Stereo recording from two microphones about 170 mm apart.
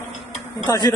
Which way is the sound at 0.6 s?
25° left (ahead or behind).